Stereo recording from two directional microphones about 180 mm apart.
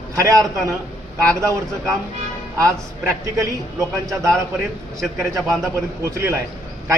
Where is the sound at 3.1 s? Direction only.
15° right (ahead or behind).